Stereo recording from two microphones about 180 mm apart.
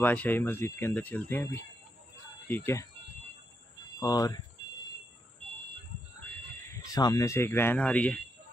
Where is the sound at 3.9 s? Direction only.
20° left (ahead or behind).